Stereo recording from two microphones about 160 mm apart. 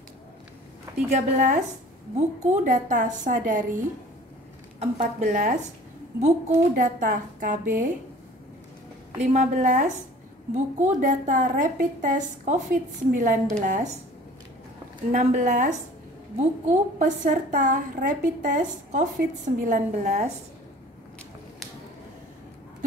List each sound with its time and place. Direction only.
1.1 s a woman's voice: 50° right (ahead or behind)
4.7 s a woman's voice: 45° right (ahead or behind)
9.3 s a woman's voice: 50° right (ahead or behind)
15.0 s a woman's voice: 50° right (ahead or behind)